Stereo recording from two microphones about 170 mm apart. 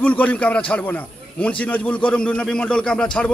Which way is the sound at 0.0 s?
10° left (ahead or behind).